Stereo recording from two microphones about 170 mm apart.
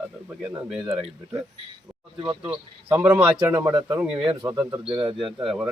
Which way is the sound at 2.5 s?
10° right (ahead or behind).